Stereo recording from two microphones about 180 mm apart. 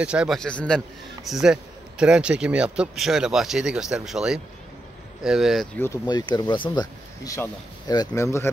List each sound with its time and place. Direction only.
0.0 s a man's voice: 5° right (ahead or behind)
5.8 s speech: 20° left (ahead or behind)